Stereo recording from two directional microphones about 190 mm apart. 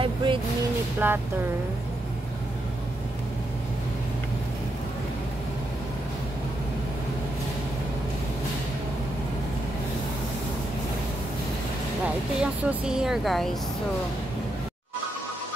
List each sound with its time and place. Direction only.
0.0 s vehicle: 25° right (ahead or behind)
0.9 s speech: 10° right (ahead or behind)
12.4 s speech: 5° right (ahead or behind)